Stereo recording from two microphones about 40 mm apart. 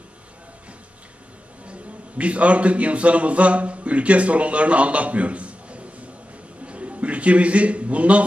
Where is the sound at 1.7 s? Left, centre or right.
Right.